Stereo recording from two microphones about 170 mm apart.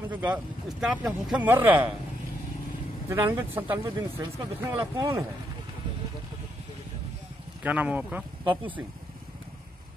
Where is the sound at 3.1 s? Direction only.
15° right (ahead or behind).